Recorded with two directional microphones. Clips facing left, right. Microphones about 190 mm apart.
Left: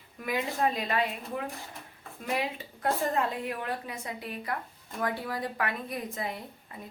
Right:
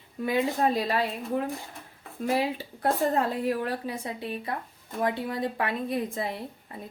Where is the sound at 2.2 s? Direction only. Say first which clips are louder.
Right 5 dB; 30° right (ahead or behind).